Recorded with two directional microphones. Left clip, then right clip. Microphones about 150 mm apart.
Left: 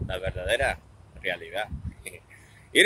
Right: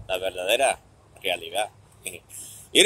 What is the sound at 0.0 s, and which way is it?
Speech, 20° left (ahead or behind).